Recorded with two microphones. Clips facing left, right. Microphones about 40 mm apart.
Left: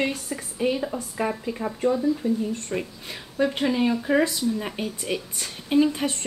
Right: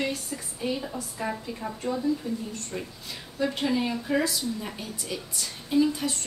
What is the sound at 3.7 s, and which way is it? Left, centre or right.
Speech, left.